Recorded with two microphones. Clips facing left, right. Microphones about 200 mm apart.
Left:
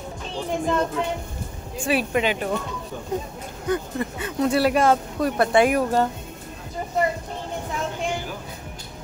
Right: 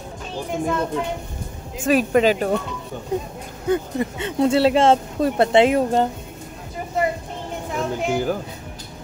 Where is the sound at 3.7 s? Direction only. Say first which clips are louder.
Right 4 dB; 25° right (ahead or behind).